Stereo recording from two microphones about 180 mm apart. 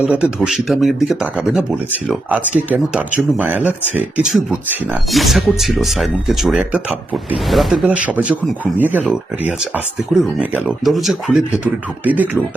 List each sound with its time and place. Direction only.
0.0 s speech: 5° right (ahead or behind)